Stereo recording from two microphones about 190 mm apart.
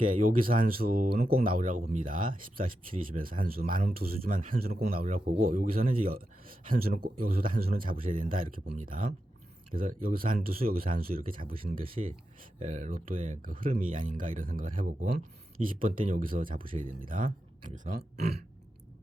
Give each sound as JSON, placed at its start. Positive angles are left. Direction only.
{"t": 0.1, "sound": "speech", "side_deg": -45}